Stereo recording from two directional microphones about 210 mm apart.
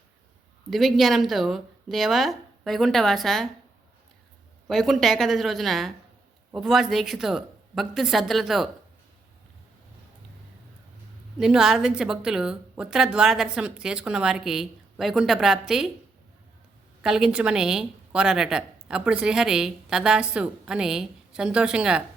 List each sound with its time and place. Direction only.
0.7 s a woman's voice: centre (ahead or behind)
4.7 s a woman's voice: centre (ahead or behind)
11.3 s a woman's voice: 5° right (ahead or behind)
17.0 s a woman's voice: 5° right (ahead or behind)